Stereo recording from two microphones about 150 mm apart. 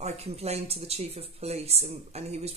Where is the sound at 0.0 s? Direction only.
45° right (ahead or behind).